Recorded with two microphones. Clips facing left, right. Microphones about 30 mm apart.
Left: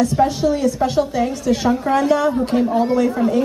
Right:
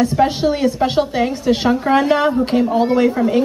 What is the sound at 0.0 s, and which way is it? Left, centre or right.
A woman's voice, right.